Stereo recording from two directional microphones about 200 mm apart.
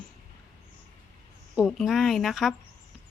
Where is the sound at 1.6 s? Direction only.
Centre (ahead or behind).